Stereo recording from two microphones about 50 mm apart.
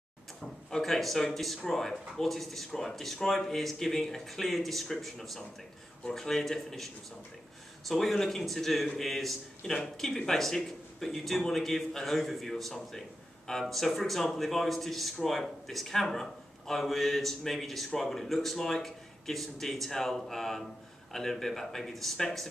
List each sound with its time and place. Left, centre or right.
0.7 s a man's voice: centre
7.9 s a man's voice: centre